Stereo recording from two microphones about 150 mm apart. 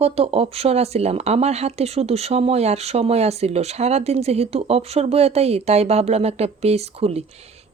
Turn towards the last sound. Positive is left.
turn(degrees=-45)  # may be behind; listen again after turning